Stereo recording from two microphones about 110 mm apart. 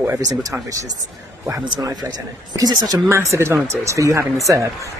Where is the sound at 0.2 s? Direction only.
30° right (ahead or behind).